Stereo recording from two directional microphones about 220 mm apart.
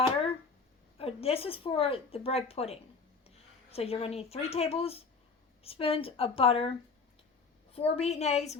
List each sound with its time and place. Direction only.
0.9 s a woman's voice: 25° left (ahead or behind)
7.7 s a woman's voice: 25° left (ahead or behind)